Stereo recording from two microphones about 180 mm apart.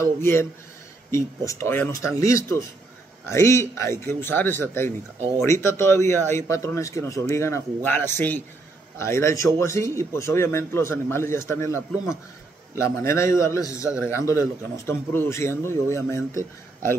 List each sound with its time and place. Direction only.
0.0 s speech: 15° left (ahead or behind)